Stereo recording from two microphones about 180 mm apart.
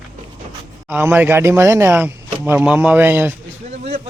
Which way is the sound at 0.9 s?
10° right (ahead or behind).